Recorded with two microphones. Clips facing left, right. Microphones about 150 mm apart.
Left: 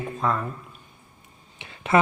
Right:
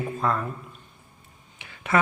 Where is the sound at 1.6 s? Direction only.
25° left (ahead or behind).